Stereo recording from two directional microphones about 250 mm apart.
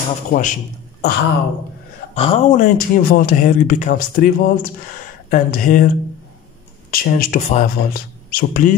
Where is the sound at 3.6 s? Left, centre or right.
Left.